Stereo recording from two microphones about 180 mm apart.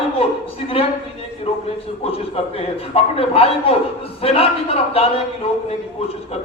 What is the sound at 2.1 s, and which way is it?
A man's voice, 35° left (ahead or behind).